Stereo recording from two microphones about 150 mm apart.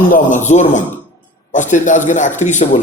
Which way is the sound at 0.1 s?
55° left (ahead or behind).